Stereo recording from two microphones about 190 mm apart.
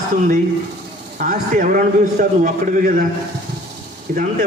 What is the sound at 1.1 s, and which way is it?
A man's voice, 45° right (ahead or behind).